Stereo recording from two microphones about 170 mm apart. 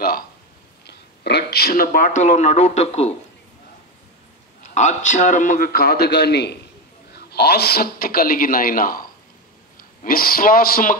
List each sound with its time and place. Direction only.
0.8 s speech: 75° left (ahead or behind); by 3.2 s 40° left (ahead or behind)
4.7 s a man's voice: 45° left (ahead or behind)